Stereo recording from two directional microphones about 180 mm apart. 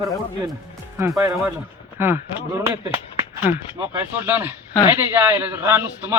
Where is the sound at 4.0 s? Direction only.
10° right (ahead or behind).